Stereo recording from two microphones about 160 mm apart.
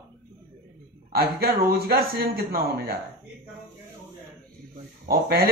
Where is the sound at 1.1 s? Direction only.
70° right (ahead or behind).